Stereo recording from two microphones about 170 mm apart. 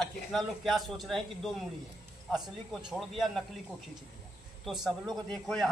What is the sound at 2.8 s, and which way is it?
Speech, centre (ahead or behind).